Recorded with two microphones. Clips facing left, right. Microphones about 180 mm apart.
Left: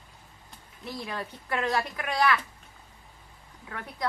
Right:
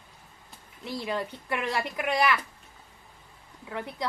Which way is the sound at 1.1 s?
15° right (ahead or behind).